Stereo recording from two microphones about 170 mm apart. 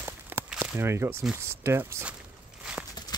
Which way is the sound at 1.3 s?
15° right (ahead or behind).